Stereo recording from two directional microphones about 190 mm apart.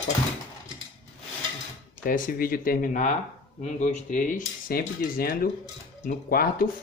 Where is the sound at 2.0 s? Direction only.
45° left (ahead or behind).